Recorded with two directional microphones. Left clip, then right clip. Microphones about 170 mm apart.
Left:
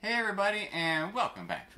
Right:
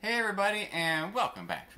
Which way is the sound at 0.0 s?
20° right (ahead or behind).